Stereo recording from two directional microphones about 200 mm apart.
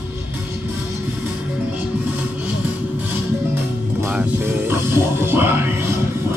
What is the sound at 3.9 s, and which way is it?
Music, 10° right (ahead or behind).